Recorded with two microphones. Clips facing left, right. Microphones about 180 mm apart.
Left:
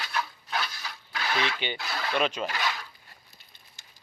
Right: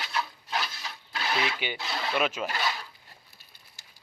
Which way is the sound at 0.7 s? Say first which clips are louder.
Even; 25° right (ahead or behind).